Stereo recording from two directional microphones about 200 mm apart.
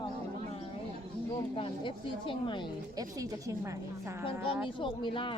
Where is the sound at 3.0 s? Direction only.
15° right (ahead or behind).